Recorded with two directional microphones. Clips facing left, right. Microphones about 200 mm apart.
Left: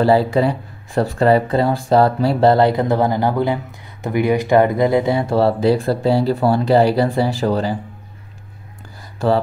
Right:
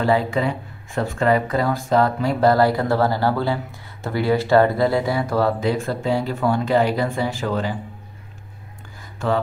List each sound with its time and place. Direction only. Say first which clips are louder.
0.0 s speech: left 5 dB; 35° left (ahead or behind)
9.2 s speech: left 5 dB; 35° left (ahead or behind)